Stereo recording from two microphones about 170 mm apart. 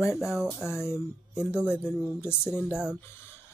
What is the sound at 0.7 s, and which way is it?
Speech, 15° left (ahead or behind).